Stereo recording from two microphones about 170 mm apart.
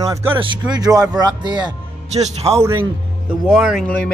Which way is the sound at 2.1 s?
40° right (ahead or behind).